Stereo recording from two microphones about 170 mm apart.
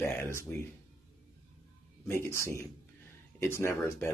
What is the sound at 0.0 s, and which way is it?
Speech, 15° left (ahead or behind).